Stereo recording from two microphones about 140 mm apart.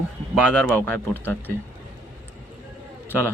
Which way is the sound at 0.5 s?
10° left (ahead or behind).